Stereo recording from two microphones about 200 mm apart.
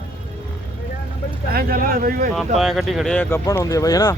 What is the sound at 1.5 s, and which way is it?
Speech, 45° right (ahead or behind).